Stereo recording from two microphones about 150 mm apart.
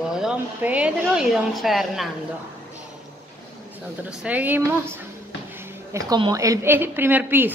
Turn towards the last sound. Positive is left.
turn(degrees=-15)  # may be behind; listen again after turning